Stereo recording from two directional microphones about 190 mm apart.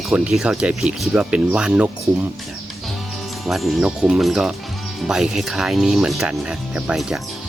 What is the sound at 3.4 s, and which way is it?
Speech, centre (ahead or behind).